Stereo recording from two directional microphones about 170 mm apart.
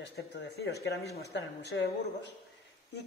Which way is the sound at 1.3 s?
90° left.